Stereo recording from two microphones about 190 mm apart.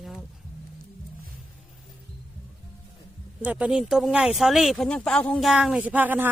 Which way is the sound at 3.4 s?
5° right (ahead or behind).